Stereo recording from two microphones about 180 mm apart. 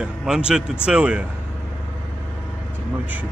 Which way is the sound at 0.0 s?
5° right (ahead or behind).